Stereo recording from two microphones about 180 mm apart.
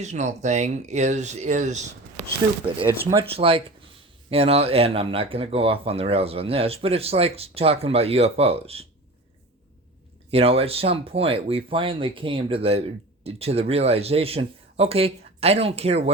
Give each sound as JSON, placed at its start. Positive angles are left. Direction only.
{"t": 0.0, "sound": "speech", "side_deg": -40}
{"t": 2.8, "sound": "speech", "side_deg": -15}
{"t": 3.3, "sound": "speech", "side_deg": -30}
{"t": 10.3, "sound": "speech", "side_deg": -30}